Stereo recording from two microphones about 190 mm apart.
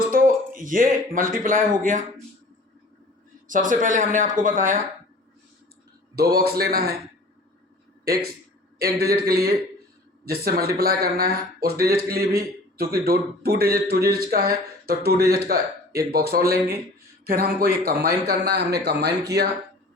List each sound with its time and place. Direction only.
0.1 s speech: 45° right (ahead or behind)
3.4 s speech: 45° right (ahead or behind)
6.1 s speech: 55° right (ahead or behind)
8.0 s a man's voice: 55° right (ahead or behind)